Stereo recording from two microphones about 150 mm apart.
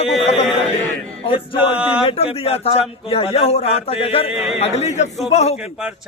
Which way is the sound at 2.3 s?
40° left (ahead or behind).